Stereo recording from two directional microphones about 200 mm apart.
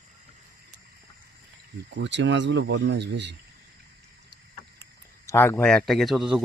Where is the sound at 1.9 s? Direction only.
60° right (ahead or behind).